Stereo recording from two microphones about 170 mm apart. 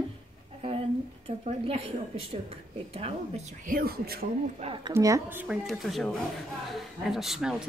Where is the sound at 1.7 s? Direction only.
30° right (ahead or behind).